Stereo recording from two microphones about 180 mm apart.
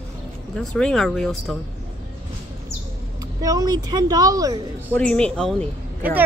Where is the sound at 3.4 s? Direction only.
20° right (ahead or behind).